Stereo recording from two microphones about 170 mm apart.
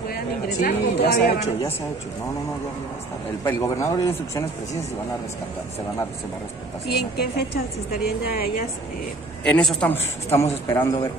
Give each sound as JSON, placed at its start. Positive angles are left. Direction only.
{"t": 0.5, "sound": "a woman's voice", "side_deg": 55}
{"t": 3.4, "sound": "a man's voice", "side_deg": 15}
{"t": 6.9, "sound": "a woman's voice", "side_deg": 70}
{"t": 9.4, "sound": "a man's voice", "side_deg": 5}